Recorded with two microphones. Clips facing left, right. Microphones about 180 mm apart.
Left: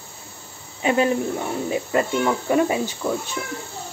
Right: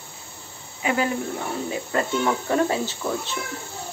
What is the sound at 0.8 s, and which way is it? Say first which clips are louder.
Speech: left 4 dB; 25° left (ahead or behind).